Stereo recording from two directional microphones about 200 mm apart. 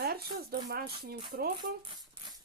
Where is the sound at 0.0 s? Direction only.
50° right (ahead or behind).